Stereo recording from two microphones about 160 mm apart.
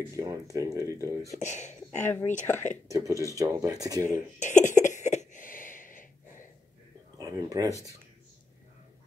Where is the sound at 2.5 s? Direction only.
10° left (ahead or behind).